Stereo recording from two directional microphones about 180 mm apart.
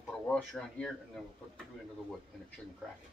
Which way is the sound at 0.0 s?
5° left (ahead or behind).